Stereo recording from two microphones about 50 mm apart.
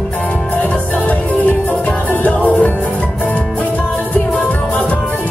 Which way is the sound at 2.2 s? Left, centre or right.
Left.